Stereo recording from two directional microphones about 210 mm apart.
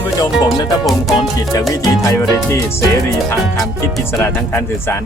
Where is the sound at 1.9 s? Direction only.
15° left (ahead or behind).